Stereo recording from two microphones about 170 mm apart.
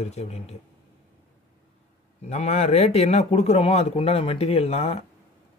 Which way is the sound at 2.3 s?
40° left (ahead or behind).